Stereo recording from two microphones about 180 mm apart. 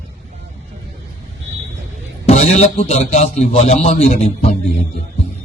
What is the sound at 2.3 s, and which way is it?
A man's voice, 40° left (ahead or behind).